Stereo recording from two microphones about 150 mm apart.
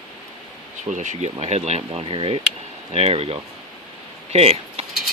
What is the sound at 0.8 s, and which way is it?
Speech, 50° right (ahead or behind).